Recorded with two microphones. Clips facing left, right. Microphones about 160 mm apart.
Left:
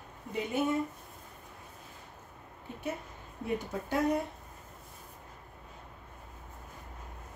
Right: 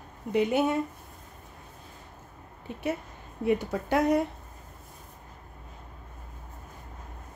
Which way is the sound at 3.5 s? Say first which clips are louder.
Right 7 dB; 80° right.